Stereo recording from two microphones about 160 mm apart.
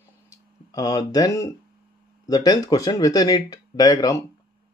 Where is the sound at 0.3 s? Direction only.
20° left (ahead or behind).